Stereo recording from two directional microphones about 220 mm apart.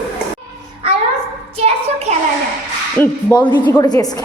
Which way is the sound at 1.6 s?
30° right (ahead or behind).